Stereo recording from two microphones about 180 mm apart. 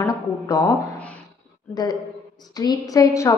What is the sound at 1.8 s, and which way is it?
A woman's voice, 20° left (ahead or behind).